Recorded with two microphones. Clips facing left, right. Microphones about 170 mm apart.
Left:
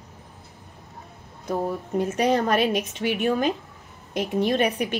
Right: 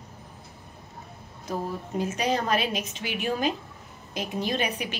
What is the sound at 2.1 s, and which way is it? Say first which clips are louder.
A woman's voice: left 5 dB; 55° left (ahead or behind).